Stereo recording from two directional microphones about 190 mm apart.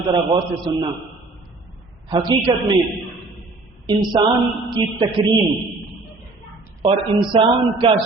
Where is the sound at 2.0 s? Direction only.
25° right (ahead or behind).